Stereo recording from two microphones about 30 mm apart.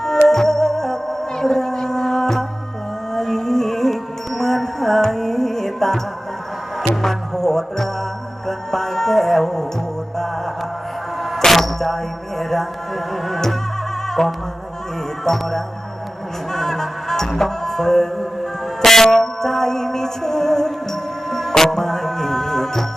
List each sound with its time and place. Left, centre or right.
0.3 s music: centre
11.2 s music: centre
12.4 s speech: centre
13.2 s music: centre
18.8 s a sound: centre
19.1 s music: centre